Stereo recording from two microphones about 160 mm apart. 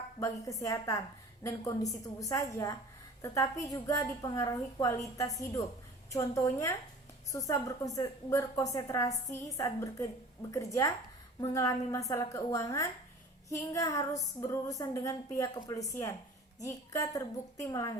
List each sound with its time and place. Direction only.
0.2 s a woman's voice: 20° left (ahead or behind)